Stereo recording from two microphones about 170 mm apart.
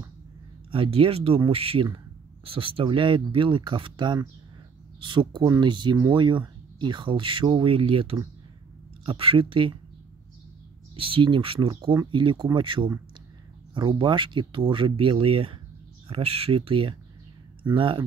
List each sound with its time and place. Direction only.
0.7 s speech: 35° right (ahead or behind)
11.0 s speech: 30° right (ahead or behind)